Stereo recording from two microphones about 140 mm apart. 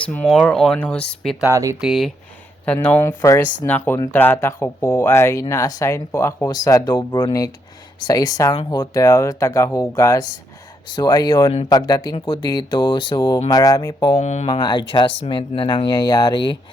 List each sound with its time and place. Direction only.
0.0 s speech: 10° left (ahead or behind)
1.5 s speech: 20° right (ahead or behind)
1.8 s speech: centre (ahead or behind)
2.6 s speech: 10° left (ahead or behind); by 14.2 s 30° left (ahead or behind)
14.2 s speech: 55° left (ahead or behind)
14.4 s speech: 35° left (ahead or behind)